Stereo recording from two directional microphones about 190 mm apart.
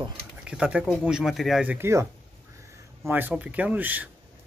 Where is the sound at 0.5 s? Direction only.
5° right (ahead or behind).